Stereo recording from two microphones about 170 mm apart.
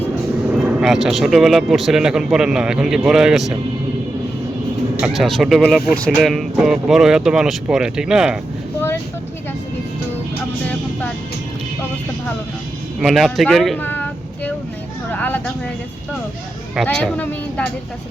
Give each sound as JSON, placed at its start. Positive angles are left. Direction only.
{"t": 0.6, "sound": "speech", "side_deg": -5}
{"t": 4.9, "sound": "speech", "side_deg": -5}
{"t": 13.0, "sound": "speech", "side_deg": 0}
{"t": 15.1, "sound": "a sound", "side_deg": 10}
{"t": 16.7, "sound": "speech", "side_deg": 5}